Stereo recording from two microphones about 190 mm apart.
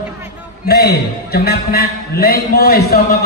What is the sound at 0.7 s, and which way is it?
A man's voice, 55° left (ahead or behind).